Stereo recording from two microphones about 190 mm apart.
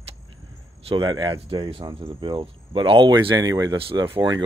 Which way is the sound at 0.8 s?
25° right (ahead or behind).